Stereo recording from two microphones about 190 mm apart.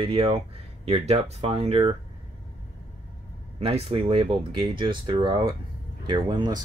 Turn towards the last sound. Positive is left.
turn(degrees=-20)  # may be behind; listen again after turning